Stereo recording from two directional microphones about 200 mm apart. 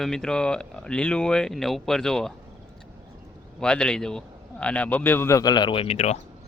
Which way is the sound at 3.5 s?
5° left (ahead or behind).